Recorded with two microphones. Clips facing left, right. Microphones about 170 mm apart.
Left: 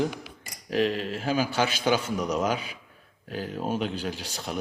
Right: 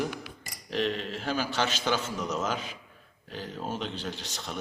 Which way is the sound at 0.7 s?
5° left (ahead or behind).